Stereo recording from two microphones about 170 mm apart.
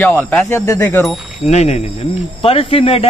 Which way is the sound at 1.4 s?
40° left (ahead or behind).